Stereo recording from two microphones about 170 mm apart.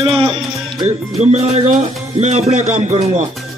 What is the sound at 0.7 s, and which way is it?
Speech, 40° right (ahead or behind).